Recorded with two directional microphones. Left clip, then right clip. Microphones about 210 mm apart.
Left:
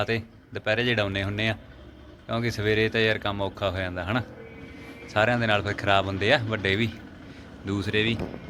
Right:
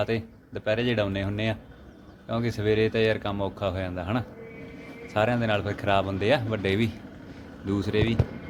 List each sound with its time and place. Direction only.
0.0 s speech: centre (ahead or behind)